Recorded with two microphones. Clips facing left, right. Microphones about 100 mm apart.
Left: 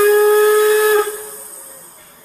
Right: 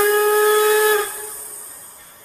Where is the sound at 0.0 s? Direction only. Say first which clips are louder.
Left 5 dB; 5° left (ahead or behind).